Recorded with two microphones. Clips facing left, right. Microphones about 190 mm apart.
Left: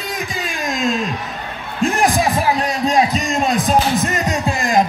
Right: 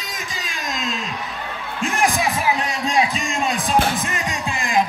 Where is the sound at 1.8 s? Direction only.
40° left (ahead or behind).